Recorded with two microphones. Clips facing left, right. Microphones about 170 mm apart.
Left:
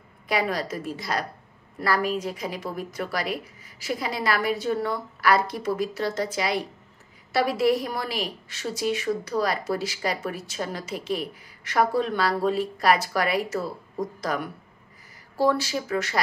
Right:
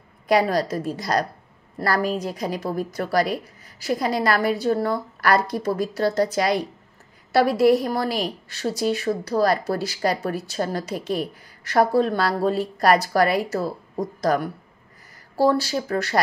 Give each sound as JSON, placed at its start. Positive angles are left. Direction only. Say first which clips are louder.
{"t": 0.3, "sound": "a woman's voice", "louder": "right 6 dB", "side_deg": -40}